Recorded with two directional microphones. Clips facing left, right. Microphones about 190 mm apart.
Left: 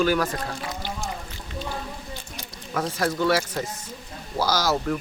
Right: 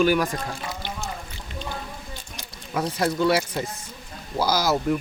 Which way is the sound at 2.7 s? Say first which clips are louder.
Right 1 dB; 10° right (ahead or behind).